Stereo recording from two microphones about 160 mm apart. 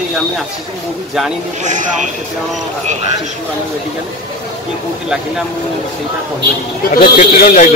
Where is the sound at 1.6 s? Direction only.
50° right (ahead or behind).